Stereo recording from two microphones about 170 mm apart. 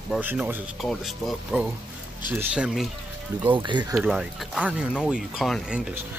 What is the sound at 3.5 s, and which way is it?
Speech, 25° right (ahead or behind).